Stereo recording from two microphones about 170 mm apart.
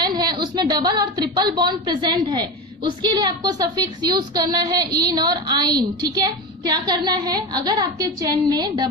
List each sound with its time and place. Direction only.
0.0 s a woman's voice: 25° right (ahead or behind)